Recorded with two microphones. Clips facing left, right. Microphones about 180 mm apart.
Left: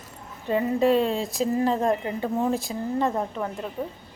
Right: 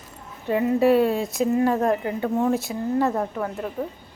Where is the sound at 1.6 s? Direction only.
30° left (ahead or behind).